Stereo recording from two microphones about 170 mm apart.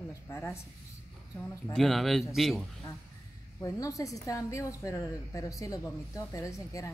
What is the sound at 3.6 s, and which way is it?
A woman's voice, 20° left (ahead or behind).